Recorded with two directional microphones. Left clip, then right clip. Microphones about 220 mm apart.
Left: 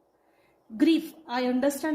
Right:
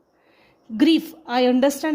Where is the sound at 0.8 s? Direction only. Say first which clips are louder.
Right 5 dB; 40° right (ahead or behind).